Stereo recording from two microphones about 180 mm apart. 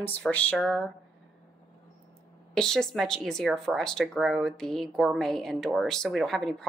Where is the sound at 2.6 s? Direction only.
5° left (ahead or behind).